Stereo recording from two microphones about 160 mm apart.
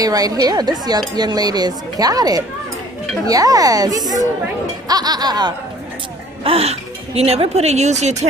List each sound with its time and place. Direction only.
0.0 s speech: 25° right (ahead or behind)
6.4 s speech: 40° right (ahead or behind)